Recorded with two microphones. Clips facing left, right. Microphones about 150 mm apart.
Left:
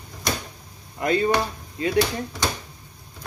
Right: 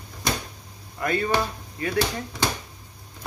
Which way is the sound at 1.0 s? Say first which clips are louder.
Left 4 dB; 20° left (ahead or behind).